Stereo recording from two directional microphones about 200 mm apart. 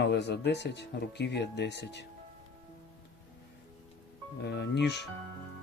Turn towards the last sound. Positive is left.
turn(degrees=60)  # may be behind; listen again after turning